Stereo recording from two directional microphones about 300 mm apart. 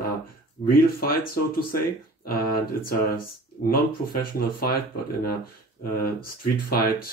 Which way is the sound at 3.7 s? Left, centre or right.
Left.